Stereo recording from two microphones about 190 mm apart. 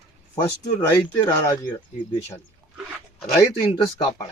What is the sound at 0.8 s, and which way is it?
Speech, 15° left (ahead or behind).